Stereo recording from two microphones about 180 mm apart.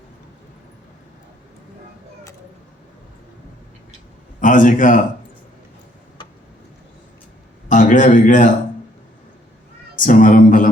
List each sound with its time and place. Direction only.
4.4 s a man's voice: 45° left (ahead or behind)
7.7 s a man's voice: 45° left (ahead or behind)
10.0 s a sound: 45° left (ahead or behind)